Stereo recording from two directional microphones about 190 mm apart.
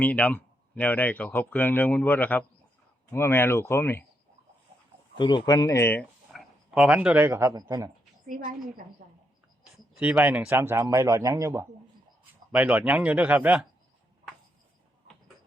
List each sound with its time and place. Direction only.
0.0 s speech: 10° left (ahead or behind)
5.1 s speech: 25° left (ahead or behind)
6.3 s speech: 5° right (ahead or behind)
9.7 s a man's voice: 5° right (ahead or behind)